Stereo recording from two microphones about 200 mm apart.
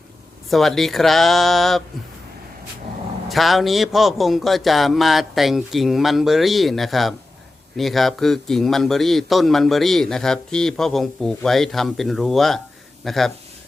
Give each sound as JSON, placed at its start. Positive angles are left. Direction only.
{"t": 0.5, "sound": "a man's voice", "side_deg": 0}
{"t": 3.2, "sound": "a man's voice", "side_deg": 0}